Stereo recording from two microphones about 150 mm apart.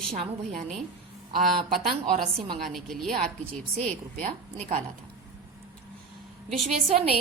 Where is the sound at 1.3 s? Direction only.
80° right.